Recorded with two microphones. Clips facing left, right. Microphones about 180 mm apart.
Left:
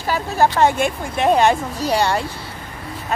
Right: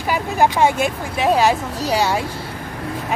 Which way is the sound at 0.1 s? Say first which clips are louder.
Even; 10° right (ahead or behind).